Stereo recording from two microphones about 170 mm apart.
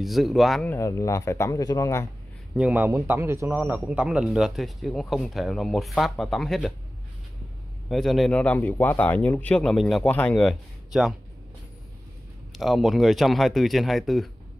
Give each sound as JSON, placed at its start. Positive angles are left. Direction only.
{"t": 0.0, "sound": "a man's voice", "side_deg": 0}
{"t": 0.7, "sound": "speech", "side_deg": 15}
{"t": 2.5, "sound": "a man's voice", "side_deg": -5}
{"t": 7.9, "sound": "speech", "side_deg": 0}
{"t": 12.5, "sound": "a man's voice", "side_deg": 0}